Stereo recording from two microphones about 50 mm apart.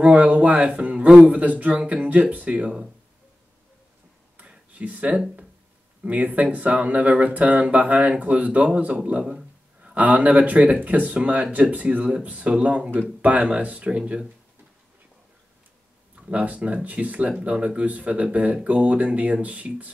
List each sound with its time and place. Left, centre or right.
0.0 s speech: right
4.7 s speech: right
9.9 s speech: right
16.2 s speech: right